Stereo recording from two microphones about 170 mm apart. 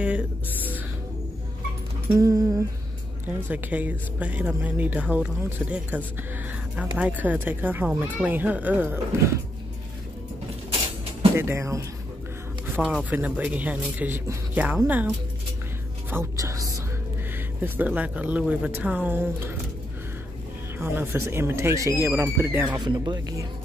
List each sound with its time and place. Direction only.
0.0 s speech: 5° right (ahead or behind)
2.1 s speech: 20° right (ahead or behind)
3.4 s speech: 10° right (ahead or behind)
11.3 s speech: 15° right (ahead or behind)
13.1 s speech: 10° right (ahead or behind)
16.1 s music: 15° right (ahead or behind)
17.6 s speech: 10° right (ahead or behind)
20.8 s speech: 15° right (ahead or behind)
22.8 s speech: 25° right (ahead or behind)